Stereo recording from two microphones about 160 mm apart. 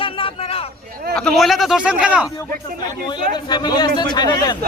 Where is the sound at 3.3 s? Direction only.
25° left (ahead or behind).